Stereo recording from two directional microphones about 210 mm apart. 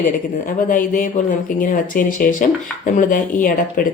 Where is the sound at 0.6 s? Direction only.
40° left (ahead or behind).